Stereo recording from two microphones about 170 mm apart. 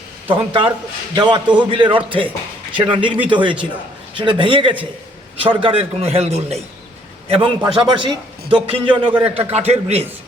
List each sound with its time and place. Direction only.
0.3 s a man's voice: 30° right (ahead or behind)